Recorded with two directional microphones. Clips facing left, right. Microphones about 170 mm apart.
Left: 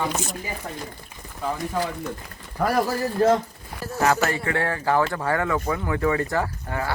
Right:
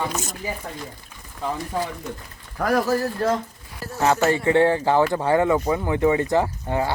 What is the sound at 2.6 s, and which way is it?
Speech, 5° left (ahead or behind).